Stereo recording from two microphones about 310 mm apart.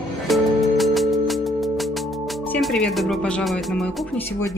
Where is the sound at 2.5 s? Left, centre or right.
Centre.